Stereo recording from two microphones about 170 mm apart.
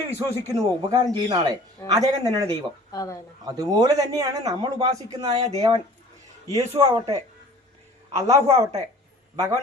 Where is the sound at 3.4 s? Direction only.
20° right (ahead or behind).